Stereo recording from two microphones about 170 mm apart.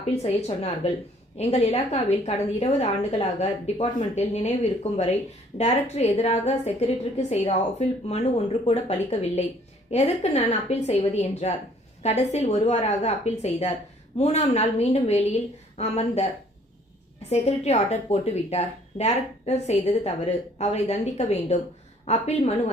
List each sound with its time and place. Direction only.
0.0 s a woman's voice: 40° left (ahead or behind)
17.2 s a woman's voice: 40° left (ahead or behind)